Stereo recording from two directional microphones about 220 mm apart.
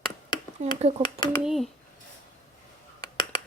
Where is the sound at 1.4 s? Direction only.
Centre (ahead or behind).